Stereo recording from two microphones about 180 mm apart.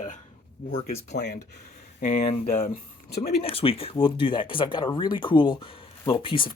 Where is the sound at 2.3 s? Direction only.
35° left (ahead or behind).